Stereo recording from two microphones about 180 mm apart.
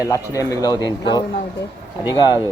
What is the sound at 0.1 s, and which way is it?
A man's voice, 20° left (ahead or behind).